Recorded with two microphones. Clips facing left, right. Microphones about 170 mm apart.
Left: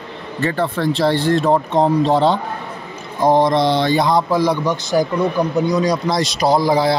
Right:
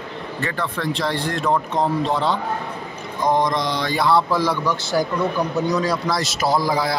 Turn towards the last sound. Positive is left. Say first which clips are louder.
# left 5 dB
turn(degrees=25)  # may be behind; listen again after turning